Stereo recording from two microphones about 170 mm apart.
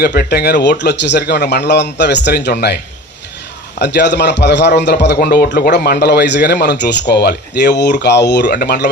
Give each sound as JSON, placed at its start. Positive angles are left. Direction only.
{"t": 0.0, "sound": "speech", "side_deg": 65}
{"t": 3.8, "sound": "speech", "side_deg": 80}
{"t": 5.2, "sound": "a man's voice", "side_deg": 65}